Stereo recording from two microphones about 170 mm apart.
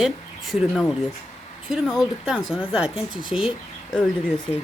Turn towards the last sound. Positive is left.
turn(degrees=35)  # may be behind; listen again after turning